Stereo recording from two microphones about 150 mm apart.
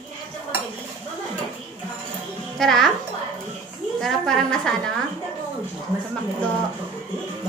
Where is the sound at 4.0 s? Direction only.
5° left (ahead or behind).